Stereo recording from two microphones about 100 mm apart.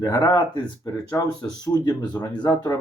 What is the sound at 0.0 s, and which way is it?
Speech, 40° left (ahead or behind).